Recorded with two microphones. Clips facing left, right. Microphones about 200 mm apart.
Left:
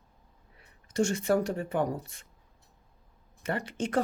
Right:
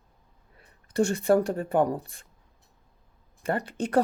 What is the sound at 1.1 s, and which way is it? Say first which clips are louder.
Speech: right 4 dB; 35° right (ahead or behind).